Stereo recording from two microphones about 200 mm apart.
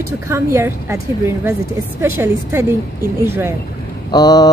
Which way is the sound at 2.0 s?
15° right (ahead or behind).